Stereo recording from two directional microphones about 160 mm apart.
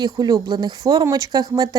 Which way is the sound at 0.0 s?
25° right (ahead or behind).